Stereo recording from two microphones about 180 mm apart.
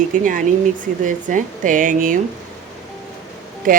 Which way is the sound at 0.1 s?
50° right (ahead or behind).